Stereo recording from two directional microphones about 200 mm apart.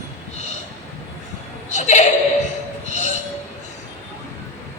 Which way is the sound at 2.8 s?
35° left (ahead or behind).